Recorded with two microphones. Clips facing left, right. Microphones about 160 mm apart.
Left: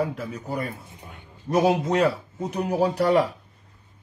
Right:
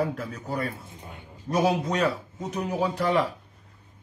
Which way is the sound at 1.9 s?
30° left (ahead or behind).